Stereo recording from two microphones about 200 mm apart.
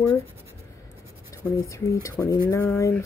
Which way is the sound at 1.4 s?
15° left (ahead or behind).